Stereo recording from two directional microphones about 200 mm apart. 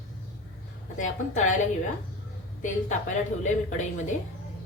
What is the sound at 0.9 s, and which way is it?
Speech, 40° left (ahead or behind).